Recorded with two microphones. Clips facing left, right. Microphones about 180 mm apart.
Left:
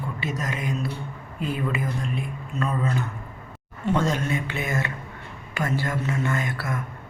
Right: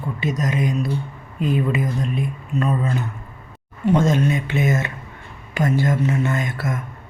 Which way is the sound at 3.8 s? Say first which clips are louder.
Right 6 dB; 20° right (ahead or behind).